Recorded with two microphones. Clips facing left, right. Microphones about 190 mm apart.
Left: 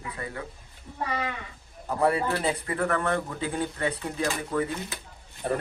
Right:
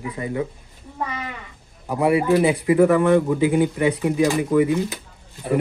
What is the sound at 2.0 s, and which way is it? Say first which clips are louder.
Speech: right 8 dB; 15° right (ahead or behind).